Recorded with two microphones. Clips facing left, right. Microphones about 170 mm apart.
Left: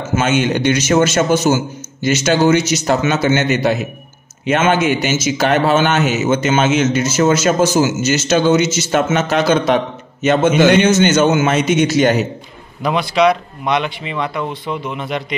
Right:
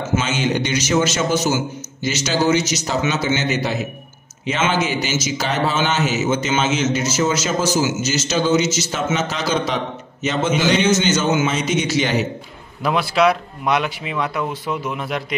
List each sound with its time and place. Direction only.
0.1 s a man's voice: 55° left (ahead or behind)
12.8 s speech: 5° right (ahead or behind)